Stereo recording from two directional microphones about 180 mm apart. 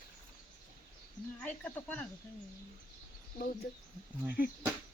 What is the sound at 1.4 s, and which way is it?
Speech, 10° left (ahead or behind).